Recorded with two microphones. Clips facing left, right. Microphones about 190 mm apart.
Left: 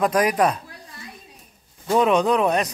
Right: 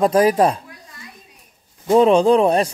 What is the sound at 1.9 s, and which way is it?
Speech, 30° right (ahead or behind).